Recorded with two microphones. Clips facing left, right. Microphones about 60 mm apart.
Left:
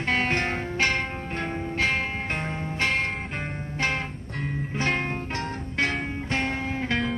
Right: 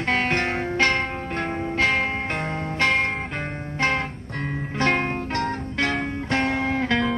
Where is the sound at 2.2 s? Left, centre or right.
Right.